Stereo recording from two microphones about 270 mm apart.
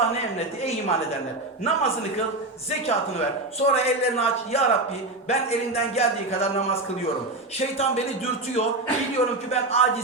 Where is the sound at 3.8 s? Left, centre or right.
Left.